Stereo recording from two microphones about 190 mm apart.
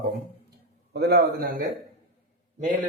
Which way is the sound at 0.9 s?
60° right (ahead or behind).